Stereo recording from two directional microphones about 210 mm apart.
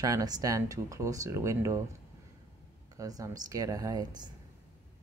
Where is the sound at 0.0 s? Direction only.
15° right (ahead or behind).